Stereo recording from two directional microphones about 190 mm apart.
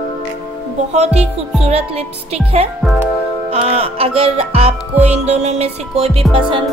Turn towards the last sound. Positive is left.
turn(degrees=-25)  # may be behind; listen again after turning